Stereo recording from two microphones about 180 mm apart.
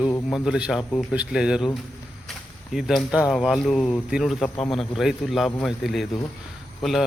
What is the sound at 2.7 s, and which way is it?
A man's voice, centre (ahead or behind).